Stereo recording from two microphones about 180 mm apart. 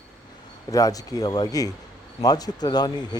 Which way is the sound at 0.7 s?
20° left (ahead or behind).